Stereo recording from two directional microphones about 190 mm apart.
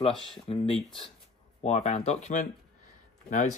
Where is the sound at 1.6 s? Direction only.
35° left (ahead or behind).